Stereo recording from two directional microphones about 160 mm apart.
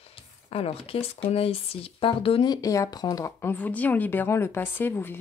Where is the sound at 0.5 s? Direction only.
35° left (ahead or behind).